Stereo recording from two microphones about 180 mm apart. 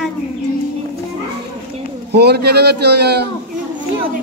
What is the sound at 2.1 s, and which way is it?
A man's voice, 65° right (ahead or behind).